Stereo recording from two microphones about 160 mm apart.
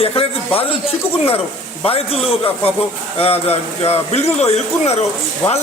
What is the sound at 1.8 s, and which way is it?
A man's voice, 40° left (ahead or behind).